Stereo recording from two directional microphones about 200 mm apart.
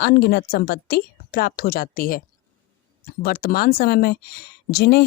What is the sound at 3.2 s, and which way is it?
Speech, 50° left (ahead or behind).